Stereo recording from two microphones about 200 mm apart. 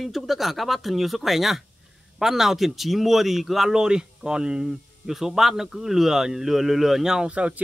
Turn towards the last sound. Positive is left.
turn(degrees=-5)  # may be behind; listen again after turning